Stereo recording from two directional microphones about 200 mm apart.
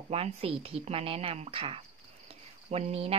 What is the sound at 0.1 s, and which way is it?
A woman's voice, 30° right (ahead or behind).